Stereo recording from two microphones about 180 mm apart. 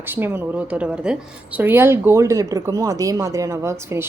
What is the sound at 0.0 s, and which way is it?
A woman's voice, 10° right (ahead or behind).